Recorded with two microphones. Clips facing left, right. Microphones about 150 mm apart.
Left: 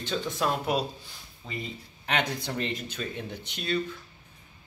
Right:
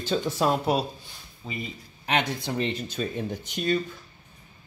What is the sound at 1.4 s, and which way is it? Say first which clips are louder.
Speech: right 2 dB; 5° right (ahead or behind).